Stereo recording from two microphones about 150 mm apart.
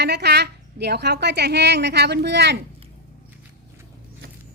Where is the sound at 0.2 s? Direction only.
90° right.